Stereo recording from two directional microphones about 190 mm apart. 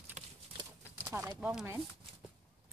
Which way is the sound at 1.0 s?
15° right (ahead or behind).